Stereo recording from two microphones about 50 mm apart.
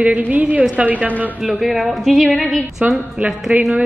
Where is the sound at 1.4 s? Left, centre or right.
Centre.